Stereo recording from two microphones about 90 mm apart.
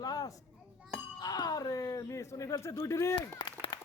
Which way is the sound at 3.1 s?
60° left (ahead or behind).